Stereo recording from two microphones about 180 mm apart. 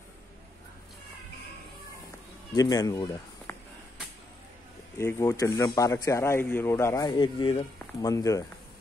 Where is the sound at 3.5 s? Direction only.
10° left (ahead or behind).